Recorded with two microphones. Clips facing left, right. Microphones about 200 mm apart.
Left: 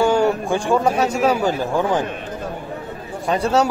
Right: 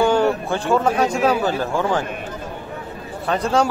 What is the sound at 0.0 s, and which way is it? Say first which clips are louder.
A man's voice: even; 10° left (ahead or behind).